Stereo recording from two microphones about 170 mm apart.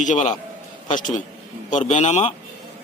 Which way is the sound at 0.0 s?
45° left (ahead or behind).